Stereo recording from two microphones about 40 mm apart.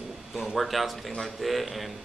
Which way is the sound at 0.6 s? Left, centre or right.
Centre.